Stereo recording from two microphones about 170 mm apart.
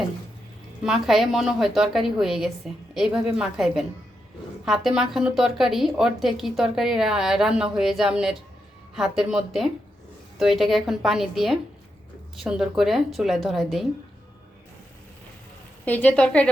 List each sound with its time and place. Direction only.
0.9 s a woman's voice: centre (ahead or behind)
15.9 s a woman's voice: 10° left (ahead or behind)